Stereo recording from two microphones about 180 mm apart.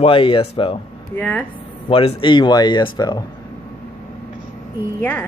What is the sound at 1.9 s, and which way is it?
Speech, 30° left (ahead or behind).